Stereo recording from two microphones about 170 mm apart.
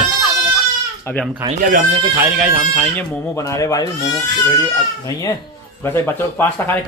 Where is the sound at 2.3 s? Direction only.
5° right (ahead or behind).